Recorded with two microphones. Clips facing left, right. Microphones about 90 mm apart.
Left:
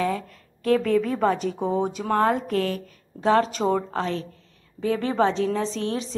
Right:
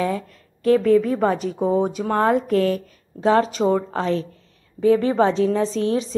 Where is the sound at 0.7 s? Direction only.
15° right (ahead or behind).